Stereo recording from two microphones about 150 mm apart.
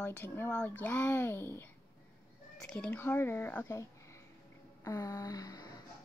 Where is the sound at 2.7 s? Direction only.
10° left (ahead or behind).